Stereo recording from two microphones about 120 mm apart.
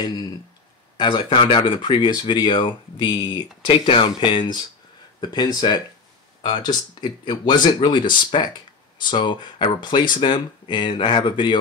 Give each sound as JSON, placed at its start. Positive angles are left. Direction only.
{"t": 0.0, "sound": "speech", "side_deg": 35}